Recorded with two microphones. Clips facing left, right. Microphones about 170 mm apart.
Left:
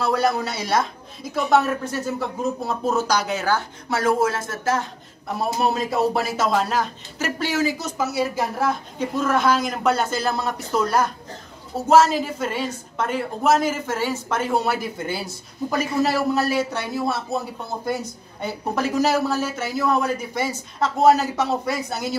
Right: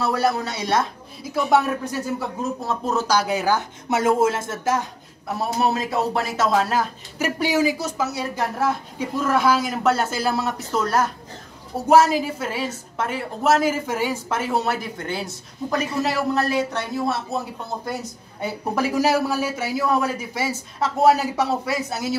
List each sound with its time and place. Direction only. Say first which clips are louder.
0.0 s a woman's voice: even; 5° right (ahead or behind); by 4.8 s 20° right (ahead or behind)
5.6 s a woman's voice: left 1 dB; centre (ahead or behind)
8.0 s a woman's voice: left 5 dB; 5° left (ahead or behind)
11.7 s a woman's voice: even; 15° right (ahead or behind)
18.4 s a man's voice: right 1 dB; 10° right (ahead or behind)